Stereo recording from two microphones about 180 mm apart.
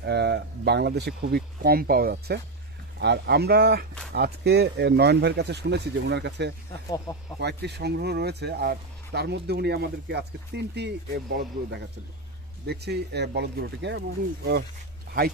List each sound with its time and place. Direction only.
0.0 s speech: 70° right (ahead or behind)
6.9 s speech: 20° left (ahead or behind)
7.3 s speech: 65° right (ahead or behind)